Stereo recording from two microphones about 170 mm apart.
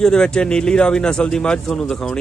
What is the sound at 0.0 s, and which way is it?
Speech, 5° left (ahead or behind).